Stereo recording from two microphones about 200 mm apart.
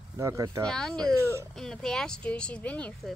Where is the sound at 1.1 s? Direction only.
15° right (ahead or behind).